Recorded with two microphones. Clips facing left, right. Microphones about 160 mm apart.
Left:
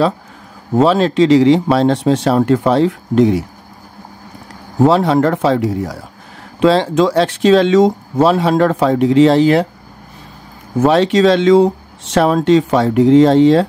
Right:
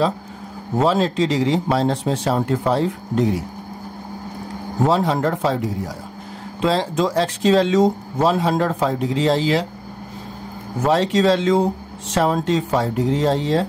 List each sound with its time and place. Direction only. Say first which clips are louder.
0.7 s speech: left 6 dB; 85° left
4.8 s speech: left 7 dB; 75° left (ahead or behind)
10.8 s speech: left 6 dB; 80° left